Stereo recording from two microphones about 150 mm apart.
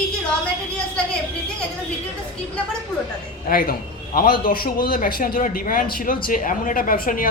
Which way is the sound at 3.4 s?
70° left (ahead or behind).